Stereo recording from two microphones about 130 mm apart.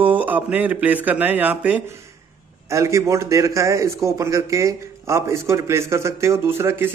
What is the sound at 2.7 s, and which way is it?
A man's voice, 20° right (ahead or behind).